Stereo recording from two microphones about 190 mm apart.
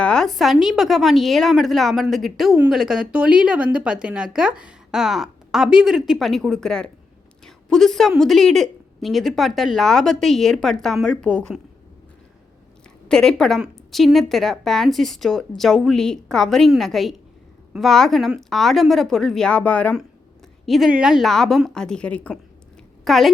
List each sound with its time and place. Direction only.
0.0 s a woman's voice: 5° left (ahead or behind)
13.1 s a woman's voice: 5° left (ahead or behind)